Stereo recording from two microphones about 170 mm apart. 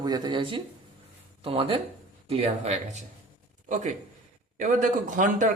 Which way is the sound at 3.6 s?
45° right (ahead or behind).